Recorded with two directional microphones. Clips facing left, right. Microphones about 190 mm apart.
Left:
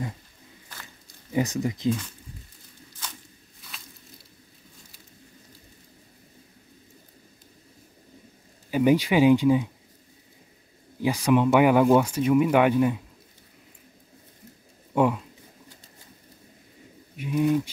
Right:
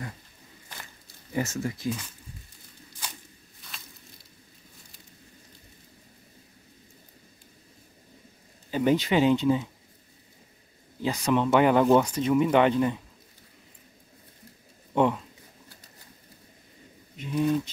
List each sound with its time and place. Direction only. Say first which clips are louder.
1.3 s speech: left 4 dB; 15° left (ahead or behind)
8.6 s speech: left 3 dB; 10° left (ahead or behind)
11.0 s speech: left 4 dB; 10° left (ahead or behind)
15.0 s speech: left 1 dB; 5° left (ahead or behind)
17.2 s speech: left 2 dB; 10° left (ahead or behind)